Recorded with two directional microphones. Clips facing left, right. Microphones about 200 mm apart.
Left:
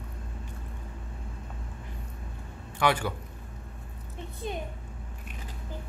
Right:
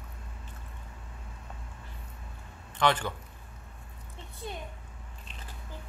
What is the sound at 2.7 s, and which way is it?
Speech, 10° left (ahead or behind).